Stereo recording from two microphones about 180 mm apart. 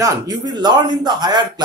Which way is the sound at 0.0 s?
20° right (ahead or behind).